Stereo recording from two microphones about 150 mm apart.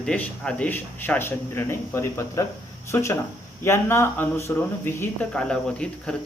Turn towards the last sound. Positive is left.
turn(degrees=5)  # may be behind; listen again after turning